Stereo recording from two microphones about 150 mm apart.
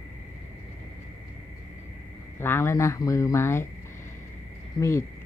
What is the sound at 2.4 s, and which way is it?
Speech, 15° left (ahead or behind).